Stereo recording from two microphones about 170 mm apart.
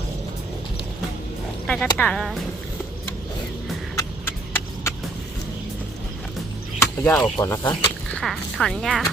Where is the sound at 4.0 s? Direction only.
15° left (ahead or behind).